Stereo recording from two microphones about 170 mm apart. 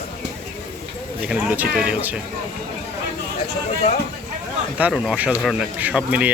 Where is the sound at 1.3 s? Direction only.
5° right (ahead or behind).